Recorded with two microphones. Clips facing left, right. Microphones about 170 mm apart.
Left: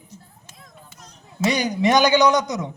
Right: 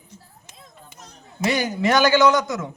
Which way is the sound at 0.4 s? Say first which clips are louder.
Even; 20° right (ahead or behind).